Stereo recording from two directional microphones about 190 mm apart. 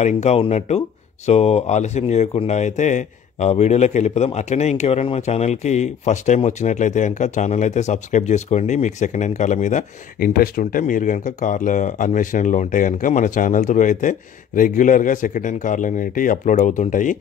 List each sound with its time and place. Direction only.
0.0 s speech: 35° left (ahead or behind)